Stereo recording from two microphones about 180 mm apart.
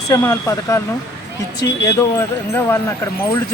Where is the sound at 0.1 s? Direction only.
15° left (ahead or behind).